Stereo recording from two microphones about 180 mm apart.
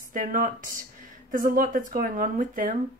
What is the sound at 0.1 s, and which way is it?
Speech, 50° right (ahead or behind).